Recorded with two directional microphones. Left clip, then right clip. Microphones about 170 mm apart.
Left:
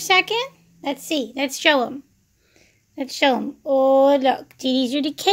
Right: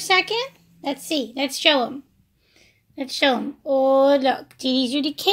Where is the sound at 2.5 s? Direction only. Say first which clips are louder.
Left 2 dB; 35° left (ahead or behind).